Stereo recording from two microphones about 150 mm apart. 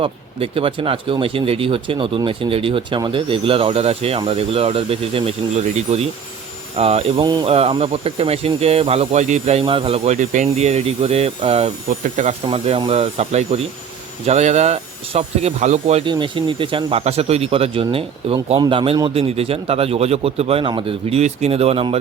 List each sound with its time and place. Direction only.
0.0 s speech: 40° right (ahead or behind)
10.1 s speech: 55° right (ahead or behind)
11.9 s speech: 55° right (ahead or behind)
16.0 s speech: 35° right (ahead or behind)